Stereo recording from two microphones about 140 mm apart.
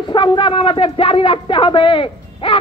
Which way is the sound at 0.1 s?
35° left (ahead or behind).